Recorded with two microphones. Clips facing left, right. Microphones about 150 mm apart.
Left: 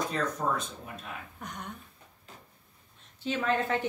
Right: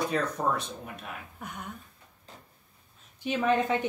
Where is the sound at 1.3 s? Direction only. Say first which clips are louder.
Right 1 dB; 5° right (ahead or behind).